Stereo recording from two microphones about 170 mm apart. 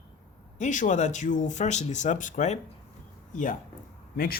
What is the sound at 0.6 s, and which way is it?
Speech, 45° left (ahead or behind).